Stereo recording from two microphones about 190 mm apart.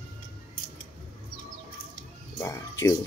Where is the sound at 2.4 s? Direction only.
15° left (ahead or behind).